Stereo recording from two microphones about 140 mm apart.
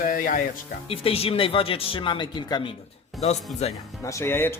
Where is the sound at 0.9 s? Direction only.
45° left (ahead or behind).